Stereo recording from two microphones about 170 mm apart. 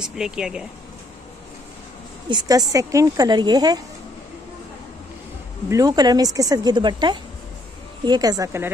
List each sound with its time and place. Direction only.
0.0 s speech: 5° right (ahead or behind)
2.2 s speech: 25° right (ahead or behind)
5.7 s speech: 20° right (ahead or behind)